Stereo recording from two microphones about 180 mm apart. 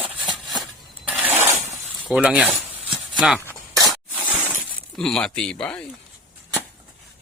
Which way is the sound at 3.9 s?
10° right (ahead or behind).